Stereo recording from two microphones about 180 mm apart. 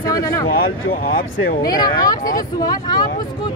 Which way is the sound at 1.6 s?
20° left (ahead or behind).